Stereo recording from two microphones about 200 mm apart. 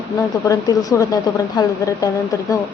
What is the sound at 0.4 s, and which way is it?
Speech, 15° left (ahead or behind).